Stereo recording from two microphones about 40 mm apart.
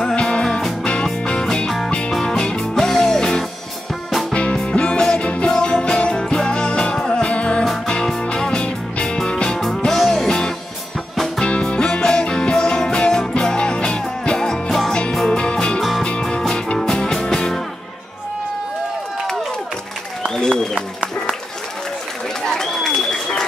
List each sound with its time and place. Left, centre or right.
0.1 s music: left
0.5 s music: centre
0.8 s music: left
2.6 s music: centre
4.3 s music: left
9.8 s music: centre
10.2 s music: centre
20.3 s a sound: centre
22.4 s applause: centre